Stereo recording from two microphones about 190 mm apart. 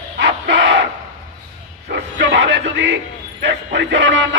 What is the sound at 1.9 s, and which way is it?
Speech, 70° right (ahead or behind).